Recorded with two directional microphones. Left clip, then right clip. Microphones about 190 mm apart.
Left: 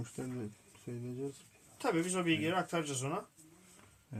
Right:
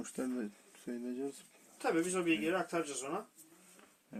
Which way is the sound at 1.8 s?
35° left (ahead or behind).